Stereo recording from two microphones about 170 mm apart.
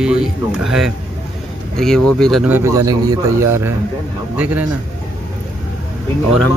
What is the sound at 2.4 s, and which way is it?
A man's voice, 15° right (ahead or behind).